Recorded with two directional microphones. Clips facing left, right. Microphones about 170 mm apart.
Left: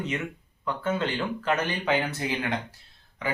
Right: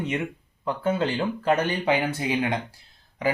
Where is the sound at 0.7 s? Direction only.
30° right (ahead or behind).